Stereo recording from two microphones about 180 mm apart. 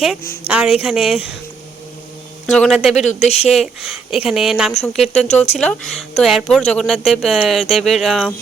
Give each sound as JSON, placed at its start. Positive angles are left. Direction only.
{"t": 0.4, "sound": "speech", "side_deg": -5}
{"t": 2.5, "sound": "speech", "side_deg": 0}
{"t": 2.9, "sound": "speech", "side_deg": 40}
{"t": 3.5, "sound": "speech", "side_deg": 0}